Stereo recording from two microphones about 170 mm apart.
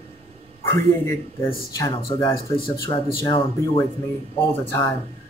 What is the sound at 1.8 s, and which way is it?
Speech, 25° left (ahead or behind).